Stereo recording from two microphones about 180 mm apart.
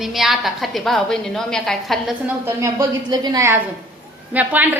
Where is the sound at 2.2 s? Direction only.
15° right (ahead or behind).